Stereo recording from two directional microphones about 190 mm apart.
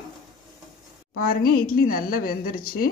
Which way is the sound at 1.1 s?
50° left (ahead or behind).